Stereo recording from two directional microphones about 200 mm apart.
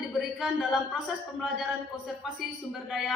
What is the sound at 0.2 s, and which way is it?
A woman's voice, centre (ahead or behind).